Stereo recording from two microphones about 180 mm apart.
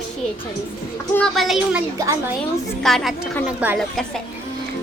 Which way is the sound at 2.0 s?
15° right (ahead or behind).